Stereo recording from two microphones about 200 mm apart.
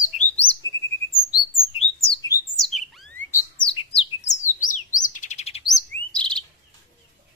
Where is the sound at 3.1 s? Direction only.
10° left (ahead or behind).